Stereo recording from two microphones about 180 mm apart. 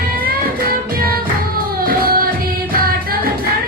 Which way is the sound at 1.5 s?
55° right (ahead or behind).